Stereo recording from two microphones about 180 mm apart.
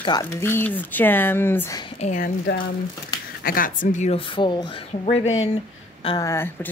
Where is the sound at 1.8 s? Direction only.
35° left (ahead or behind).